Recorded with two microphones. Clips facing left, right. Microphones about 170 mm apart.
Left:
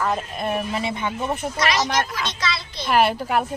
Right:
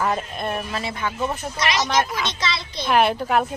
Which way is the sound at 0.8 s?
20° left (ahead or behind).